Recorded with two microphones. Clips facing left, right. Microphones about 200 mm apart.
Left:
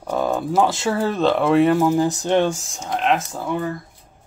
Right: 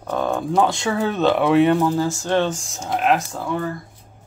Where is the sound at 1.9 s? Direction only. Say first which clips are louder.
Left 2 dB; 15° left (ahead or behind).